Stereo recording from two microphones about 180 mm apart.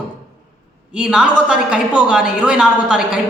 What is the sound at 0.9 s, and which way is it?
A man's voice, 5° right (ahead or behind).